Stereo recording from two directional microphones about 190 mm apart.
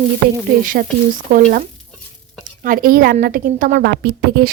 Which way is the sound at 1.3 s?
45° right (ahead or behind).